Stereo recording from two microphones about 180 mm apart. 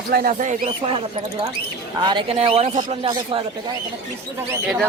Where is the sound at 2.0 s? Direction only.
25° right (ahead or behind).